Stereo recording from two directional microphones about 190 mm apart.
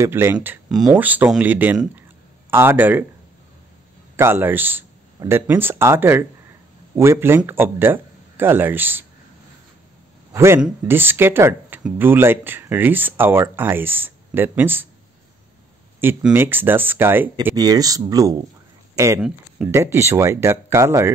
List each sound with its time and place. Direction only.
0.0 s speech: 15° right (ahead or behind)
4.2 s speech: 10° right (ahead or behind)
10.3 s speech: 15° right (ahead or behind)
16.0 s speech: 10° right (ahead or behind)